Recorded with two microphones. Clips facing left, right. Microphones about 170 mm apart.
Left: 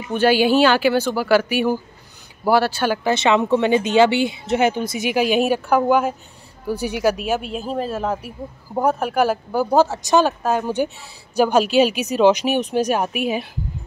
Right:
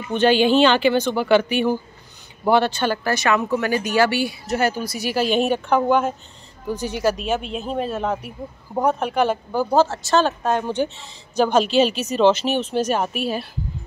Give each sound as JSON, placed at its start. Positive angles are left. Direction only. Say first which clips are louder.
{"t": 0.1, "sound": "speech", "louder": "even", "side_deg": 10}
{"t": 3.0, "sound": "speech", "louder": "left 6 dB", "side_deg": 20}